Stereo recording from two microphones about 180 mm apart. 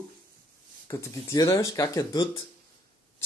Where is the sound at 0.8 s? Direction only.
20° left (ahead or behind).